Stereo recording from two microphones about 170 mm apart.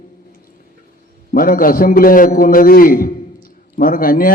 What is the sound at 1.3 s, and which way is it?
A man's voice, 55° left (ahead or behind).